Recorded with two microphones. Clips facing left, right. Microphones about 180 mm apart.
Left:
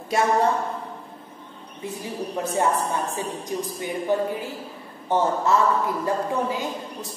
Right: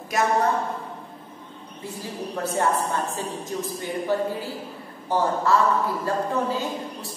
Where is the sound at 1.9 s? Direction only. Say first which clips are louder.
Left 2 dB; 20° left (ahead or behind).